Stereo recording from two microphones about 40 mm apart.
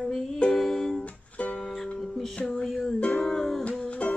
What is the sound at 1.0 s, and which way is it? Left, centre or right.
Music, left.